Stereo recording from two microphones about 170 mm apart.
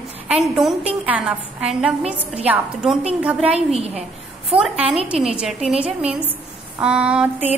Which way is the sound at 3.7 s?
35° right (ahead or behind).